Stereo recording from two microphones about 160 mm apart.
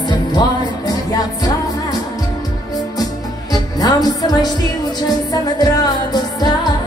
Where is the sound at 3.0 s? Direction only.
25° left (ahead or behind).